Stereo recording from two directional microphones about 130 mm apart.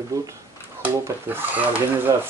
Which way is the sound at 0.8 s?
15° right (ahead or behind).